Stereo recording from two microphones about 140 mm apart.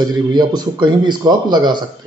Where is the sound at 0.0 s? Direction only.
30° right (ahead or behind).